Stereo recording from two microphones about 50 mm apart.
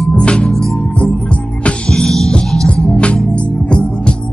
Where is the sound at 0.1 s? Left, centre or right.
Left.